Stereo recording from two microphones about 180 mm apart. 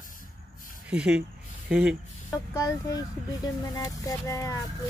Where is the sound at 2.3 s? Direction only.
20° left (ahead or behind).